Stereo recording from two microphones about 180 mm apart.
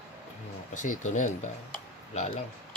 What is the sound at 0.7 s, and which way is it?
Speech, 45° left (ahead or behind).